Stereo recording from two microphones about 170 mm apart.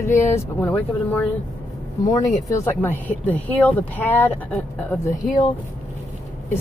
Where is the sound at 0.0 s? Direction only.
15° left (ahead or behind).